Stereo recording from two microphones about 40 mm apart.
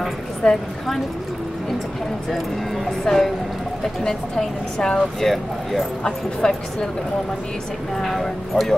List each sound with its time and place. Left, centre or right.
0.4 s a woman's voice: centre
3.1 s a woman's voice: centre
6.0 s a woman's voice: centre
8.0 s speech: centre